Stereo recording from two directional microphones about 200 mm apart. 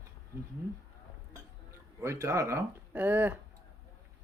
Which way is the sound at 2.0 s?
15° right (ahead or behind).